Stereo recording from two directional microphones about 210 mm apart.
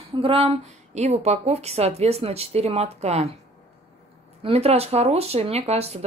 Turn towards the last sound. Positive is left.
turn(degrees=-30)  # may be behind; listen again after turning